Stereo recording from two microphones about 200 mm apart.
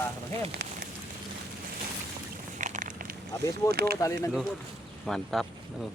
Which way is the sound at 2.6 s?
40° right (ahead or behind).